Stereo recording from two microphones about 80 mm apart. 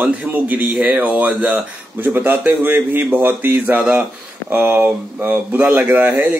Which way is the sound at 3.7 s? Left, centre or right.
Centre.